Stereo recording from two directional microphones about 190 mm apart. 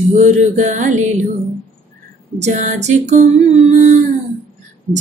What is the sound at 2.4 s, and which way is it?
Music, 40° right (ahead or behind).